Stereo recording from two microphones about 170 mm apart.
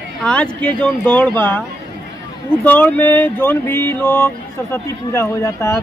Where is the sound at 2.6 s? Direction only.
10° left (ahead or behind).